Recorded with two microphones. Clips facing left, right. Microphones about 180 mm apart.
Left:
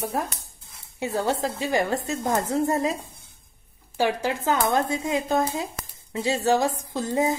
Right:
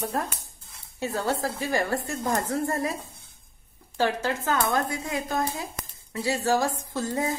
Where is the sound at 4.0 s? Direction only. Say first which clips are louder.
Left 2 dB; 15° left (ahead or behind).